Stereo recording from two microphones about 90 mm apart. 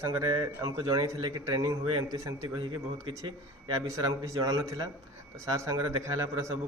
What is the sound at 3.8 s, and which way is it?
A man's voice, 35° right (ahead or behind).